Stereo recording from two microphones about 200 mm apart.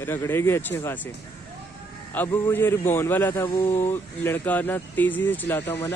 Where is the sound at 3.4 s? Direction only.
25° left (ahead or behind).